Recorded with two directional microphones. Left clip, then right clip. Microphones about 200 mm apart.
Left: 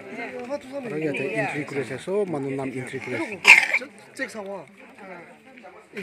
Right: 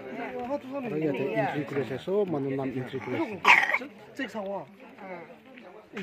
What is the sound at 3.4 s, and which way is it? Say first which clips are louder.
Speech: left 6 dB; 45° left (ahead or behind).